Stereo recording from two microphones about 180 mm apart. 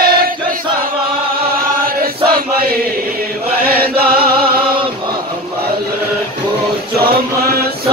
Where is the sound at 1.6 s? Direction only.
55° right (ahead or behind).